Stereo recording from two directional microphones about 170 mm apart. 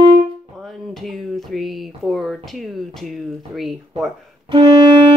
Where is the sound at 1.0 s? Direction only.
Centre (ahead or behind).